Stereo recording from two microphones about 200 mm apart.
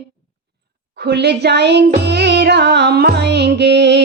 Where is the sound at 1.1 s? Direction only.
55° right (ahead or behind).